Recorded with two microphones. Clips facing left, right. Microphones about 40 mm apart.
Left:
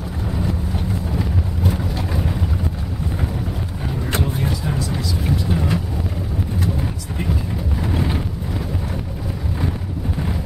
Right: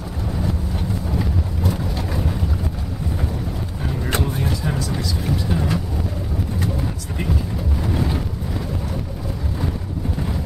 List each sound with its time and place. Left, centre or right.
1.1 s vehicle: centre
4.5 s music: centre
7.8 s vehicle: centre